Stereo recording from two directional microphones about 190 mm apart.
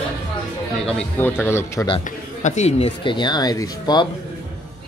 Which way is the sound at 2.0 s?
40° left (ahead or behind).